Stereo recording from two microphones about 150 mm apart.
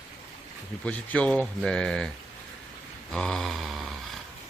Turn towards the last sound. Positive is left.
turn(degrees=0)  # may be behind; listen again after turning